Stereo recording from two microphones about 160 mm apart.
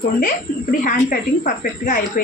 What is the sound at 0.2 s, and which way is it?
A woman's voice, 55° left (ahead or behind).